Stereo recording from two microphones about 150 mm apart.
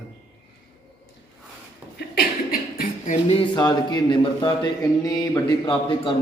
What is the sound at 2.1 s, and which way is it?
Beatboxing, 80° left.